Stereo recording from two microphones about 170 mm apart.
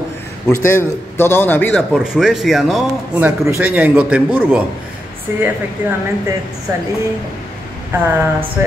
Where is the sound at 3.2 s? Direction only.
15° right (ahead or behind).